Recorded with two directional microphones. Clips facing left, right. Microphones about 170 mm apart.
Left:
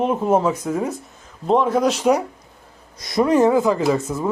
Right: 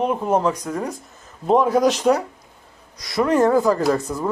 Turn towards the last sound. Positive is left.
turn(degrees=5)  # may be behind; listen again after turning